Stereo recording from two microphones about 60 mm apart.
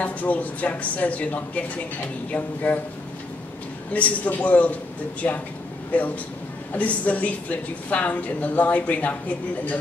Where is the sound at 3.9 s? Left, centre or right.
Left.